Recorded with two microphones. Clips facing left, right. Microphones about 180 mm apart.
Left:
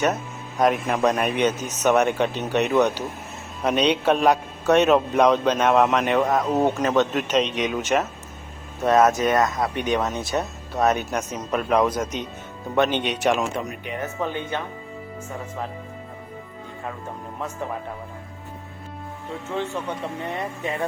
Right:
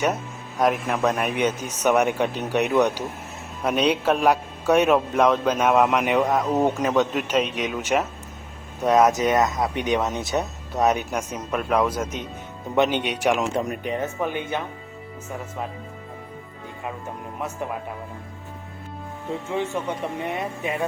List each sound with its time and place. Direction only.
0.6 s a man's voice: centre (ahead or behind)
13.5 s speech: 30° right (ahead or behind)
14.2 s a man's voice: 15° right (ahead or behind)
19.5 s a man's voice: 15° right (ahead or behind)